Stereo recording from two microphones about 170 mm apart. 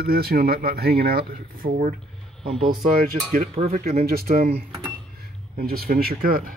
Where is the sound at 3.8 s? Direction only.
60° right (ahead or behind).